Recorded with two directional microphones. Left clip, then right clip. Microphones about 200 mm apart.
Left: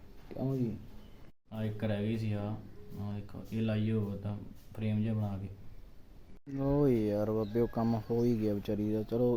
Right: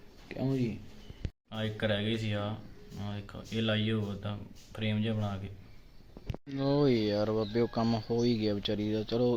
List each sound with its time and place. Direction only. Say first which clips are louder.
0.5 s speech: right 3 dB; centre (ahead or behind)
6.6 s speech: right 2 dB; 10° left (ahead or behind)
7.2 s speech: right 2 dB; centre (ahead or behind)
8.2 s speech: right 2 dB; 15° left (ahead or behind)